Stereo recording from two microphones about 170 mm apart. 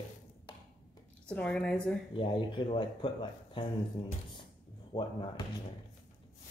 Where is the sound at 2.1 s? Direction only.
30° left (ahead or behind).